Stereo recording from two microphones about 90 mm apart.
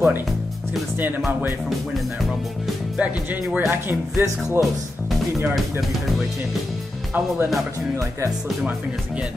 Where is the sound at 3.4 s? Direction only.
5° right (ahead or behind).